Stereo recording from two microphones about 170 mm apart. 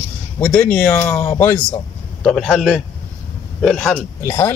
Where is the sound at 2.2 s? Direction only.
Centre (ahead or behind).